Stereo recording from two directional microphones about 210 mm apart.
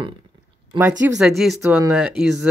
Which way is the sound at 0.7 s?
25° right (ahead or behind).